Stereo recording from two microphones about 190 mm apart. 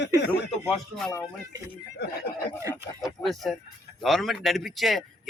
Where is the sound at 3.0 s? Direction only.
Centre (ahead or behind).